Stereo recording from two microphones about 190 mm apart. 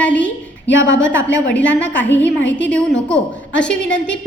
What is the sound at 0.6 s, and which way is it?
Speech, 80° left.